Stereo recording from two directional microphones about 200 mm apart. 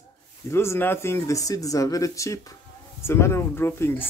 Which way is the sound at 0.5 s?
15° left (ahead or behind).